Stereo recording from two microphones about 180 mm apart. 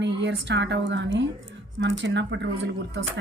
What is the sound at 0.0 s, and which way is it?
A woman's voice, 80° right.